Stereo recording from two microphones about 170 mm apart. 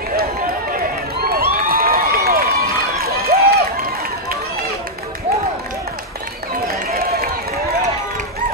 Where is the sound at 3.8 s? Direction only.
60° right (ahead or behind).